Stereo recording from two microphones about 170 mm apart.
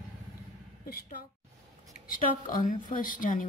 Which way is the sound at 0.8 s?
60° left (ahead or behind).